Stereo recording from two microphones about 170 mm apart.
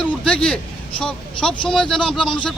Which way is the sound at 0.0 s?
5° left (ahead or behind).